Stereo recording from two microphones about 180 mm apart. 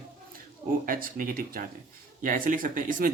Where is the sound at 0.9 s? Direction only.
50° right (ahead or behind).